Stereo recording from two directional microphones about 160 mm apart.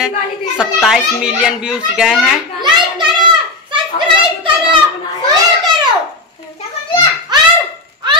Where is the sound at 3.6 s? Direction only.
30° right (ahead or behind).